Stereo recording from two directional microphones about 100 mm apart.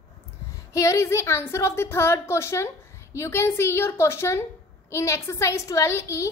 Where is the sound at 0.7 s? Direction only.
30° left (ahead or behind).